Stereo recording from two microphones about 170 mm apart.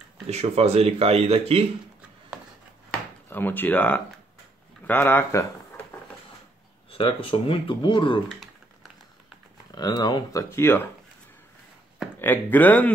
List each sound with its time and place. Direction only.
0.3 s speech: 40° right (ahead or behind)
3.3 s speech: 10° left (ahead or behind)
6.9 s speech: 30° left (ahead or behind)
8.3 s typing: centre (ahead or behind)
9.7 s speech: 25° left (ahead or behind)
12.2 s speech: 10° left (ahead or behind)